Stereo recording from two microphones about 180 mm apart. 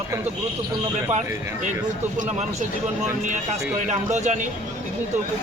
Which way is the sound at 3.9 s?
40° right (ahead or behind).